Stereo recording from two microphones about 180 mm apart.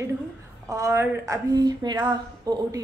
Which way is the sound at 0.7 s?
15° right (ahead or behind).